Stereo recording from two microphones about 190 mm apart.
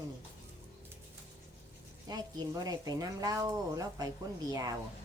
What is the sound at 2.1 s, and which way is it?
Speech, 20° right (ahead or behind).